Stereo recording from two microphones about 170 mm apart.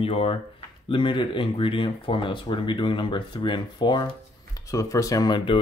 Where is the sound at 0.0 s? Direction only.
35° left (ahead or behind).